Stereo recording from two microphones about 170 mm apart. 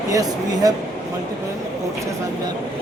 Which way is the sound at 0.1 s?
20° right (ahead or behind).